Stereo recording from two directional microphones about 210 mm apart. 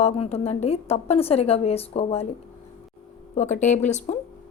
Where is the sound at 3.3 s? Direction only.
35° left (ahead or behind).